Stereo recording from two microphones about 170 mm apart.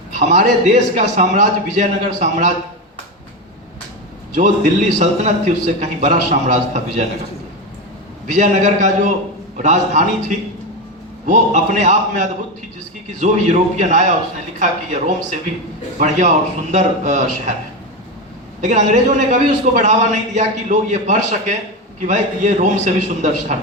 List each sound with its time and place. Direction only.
0.1 s a man's voice: 45° right (ahead or behind)
4.4 s a man's voice: 45° right (ahead or behind)
8.3 s a man's voice: 45° right (ahead or behind)
18.6 s a man's voice: 45° right (ahead or behind)